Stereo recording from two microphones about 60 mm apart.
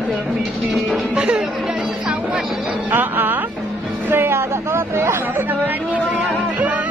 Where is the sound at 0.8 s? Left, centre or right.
Centre.